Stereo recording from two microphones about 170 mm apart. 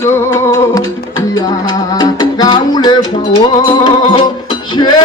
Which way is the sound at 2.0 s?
25° left (ahead or behind).